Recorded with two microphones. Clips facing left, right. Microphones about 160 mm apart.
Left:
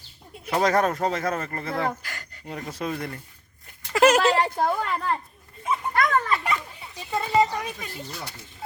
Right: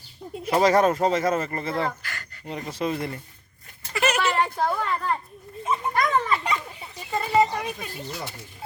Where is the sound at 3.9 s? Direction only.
90° left.